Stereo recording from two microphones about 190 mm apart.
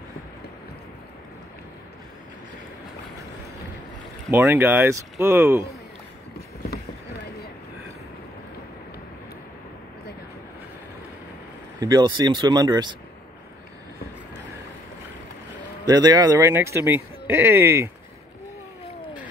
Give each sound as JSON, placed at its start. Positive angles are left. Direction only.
{"t": 4.3, "sound": "speech", "side_deg": -10}
{"t": 11.8, "sound": "speech", "side_deg": -20}
{"t": 15.8, "sound": "speech", "side_deg": -20}